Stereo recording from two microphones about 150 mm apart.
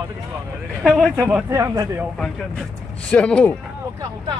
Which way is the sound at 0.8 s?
Centre (ahead or behind).